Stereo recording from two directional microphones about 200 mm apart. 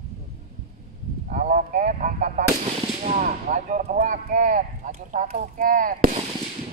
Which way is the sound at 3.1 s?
40° right (ahead or behind).